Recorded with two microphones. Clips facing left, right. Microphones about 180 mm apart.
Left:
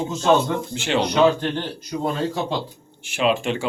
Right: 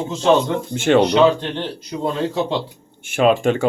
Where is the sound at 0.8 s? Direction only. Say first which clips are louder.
Right 9 dB; 50° right (ahead or behind).